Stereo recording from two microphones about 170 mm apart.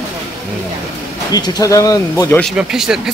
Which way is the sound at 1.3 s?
20° left (ahead or behind).